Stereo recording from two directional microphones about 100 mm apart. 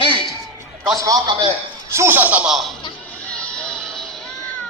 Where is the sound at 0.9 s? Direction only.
35° right (ahead or behind).